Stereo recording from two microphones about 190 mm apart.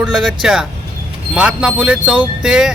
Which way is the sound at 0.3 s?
5° right (ahead or behind).